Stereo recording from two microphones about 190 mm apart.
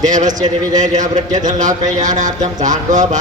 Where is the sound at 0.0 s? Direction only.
40° right (ahead or behind).